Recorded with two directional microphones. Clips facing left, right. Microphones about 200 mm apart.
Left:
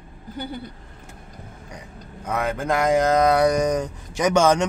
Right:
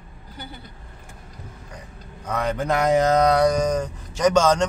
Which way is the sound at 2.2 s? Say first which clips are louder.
Even; 5° left (ahead or behind).